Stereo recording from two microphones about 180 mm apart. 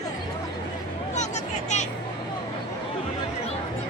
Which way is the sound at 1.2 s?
40° left (ahead or behind).